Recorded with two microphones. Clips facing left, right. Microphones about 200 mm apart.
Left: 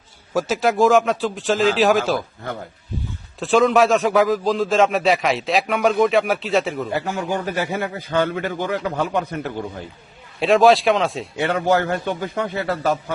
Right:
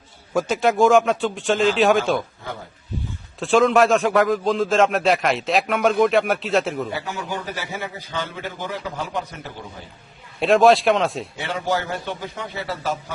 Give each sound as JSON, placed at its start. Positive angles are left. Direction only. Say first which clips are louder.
{"t": 0.3, "sound": "a man's voice", "louder": "even", "side_deg": 0}
{"t": 3.4, "sound": "a man's voice", "louder": "left 1 dB", "side_deg": 0}
{"t": 7.0, "sound": "a man's voice", "louder": "left 5 dB", "side_deg": 50}
{"t": 10.4, "sound": "a man's voice", "louder": "left 1 dB", "side_deg": 0}
{"t": 11.3, "sound": "a man's voice", "louder": "left 7 dB", "side_deg": 60}